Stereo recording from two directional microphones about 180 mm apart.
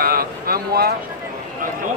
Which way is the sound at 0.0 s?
55° right (ahead or behind).